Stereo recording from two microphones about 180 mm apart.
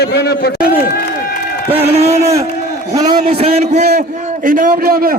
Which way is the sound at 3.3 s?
35° right (ahead or behind).